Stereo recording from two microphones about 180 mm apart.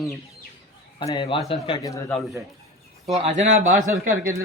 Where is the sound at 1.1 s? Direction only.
25° left (ahead or behind).